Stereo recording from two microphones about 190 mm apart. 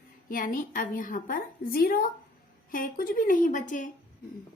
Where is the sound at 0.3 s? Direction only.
45° left (ahead or behind).